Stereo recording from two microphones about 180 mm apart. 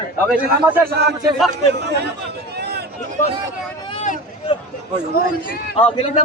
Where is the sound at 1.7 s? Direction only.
70° right (ahead or behind).